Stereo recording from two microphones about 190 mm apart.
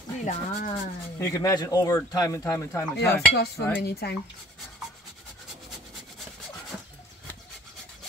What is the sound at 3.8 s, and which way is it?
Speech, 60° left (ahead or behind).